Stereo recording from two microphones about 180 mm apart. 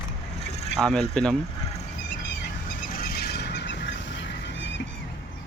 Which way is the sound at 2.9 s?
55° left (ahead or behind).